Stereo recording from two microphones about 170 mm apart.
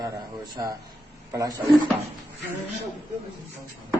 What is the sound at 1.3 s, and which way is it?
Speech, 20° right (ahead or behind).